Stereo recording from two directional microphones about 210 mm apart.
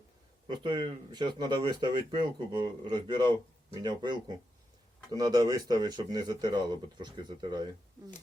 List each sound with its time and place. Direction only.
0.4 s speech: 20° right (ahead or behind)